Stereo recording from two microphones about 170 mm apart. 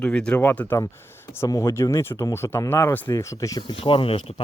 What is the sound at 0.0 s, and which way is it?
Speech, 5° left (ahead or behind).